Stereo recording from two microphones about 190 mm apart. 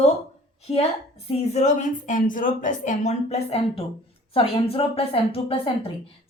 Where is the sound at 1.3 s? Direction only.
35° left (ahead or behind).